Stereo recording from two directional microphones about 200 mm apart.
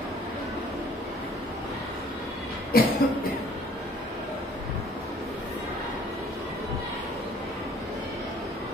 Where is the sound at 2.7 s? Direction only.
50° left (ahead or behind).